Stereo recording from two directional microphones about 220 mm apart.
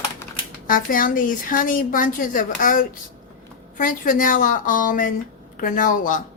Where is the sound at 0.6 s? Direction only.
40° left (ahead or behind).